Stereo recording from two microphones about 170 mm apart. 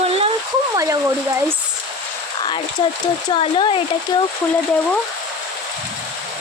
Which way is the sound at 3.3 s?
30° left (ahead or behind).